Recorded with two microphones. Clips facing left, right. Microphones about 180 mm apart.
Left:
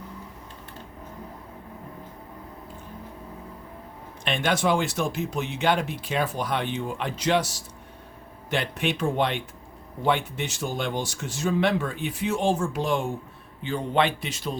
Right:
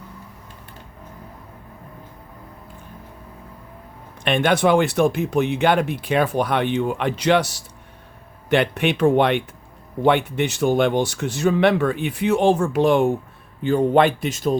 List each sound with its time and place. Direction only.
4.2 s speech: 60° right (ahead or behind)
13.6 s speech: 50° right (ahead or behind)